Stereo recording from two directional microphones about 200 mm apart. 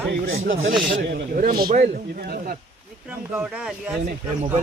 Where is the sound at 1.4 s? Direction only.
45° right (ahead or behind).